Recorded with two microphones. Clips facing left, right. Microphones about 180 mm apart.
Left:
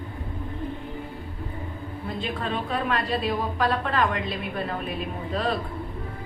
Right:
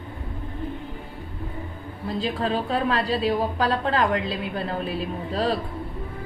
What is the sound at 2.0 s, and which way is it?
A woman's voice, 35° right (ahead or behind).